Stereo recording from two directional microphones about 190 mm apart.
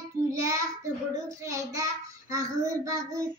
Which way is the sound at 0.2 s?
15° right (ahead or behind).